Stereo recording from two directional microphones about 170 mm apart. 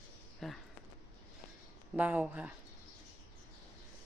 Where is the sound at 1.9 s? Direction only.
10° right (ahead or behind).